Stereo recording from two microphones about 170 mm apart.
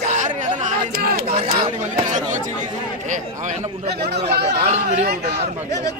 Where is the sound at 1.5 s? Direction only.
45° right (ahead or behind).